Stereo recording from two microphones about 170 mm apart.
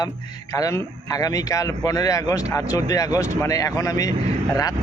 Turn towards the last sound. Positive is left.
turn(degrees=20)  # may be behind; listen again after turning